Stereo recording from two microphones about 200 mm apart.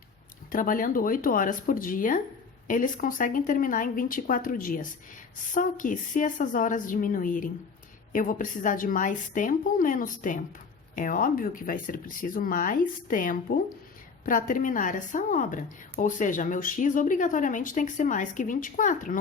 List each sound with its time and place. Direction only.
0.5 s a woman's voice: 45° left (ahead or behind)